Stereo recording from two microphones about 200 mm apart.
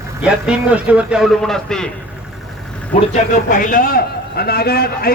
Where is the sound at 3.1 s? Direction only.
40° left (ahead or behind).